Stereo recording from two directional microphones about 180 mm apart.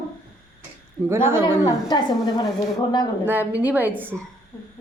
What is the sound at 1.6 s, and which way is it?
Speech, 20° left (ahead or behind).